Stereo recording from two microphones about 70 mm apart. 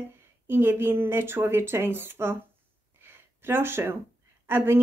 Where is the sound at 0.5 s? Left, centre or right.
Right.